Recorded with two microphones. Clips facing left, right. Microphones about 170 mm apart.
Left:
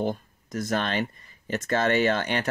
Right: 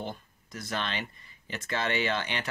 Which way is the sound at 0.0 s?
45° left (ahead or behind).